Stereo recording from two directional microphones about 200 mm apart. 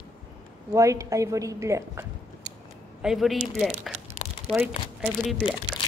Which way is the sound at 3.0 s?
Centre (ahead or behind).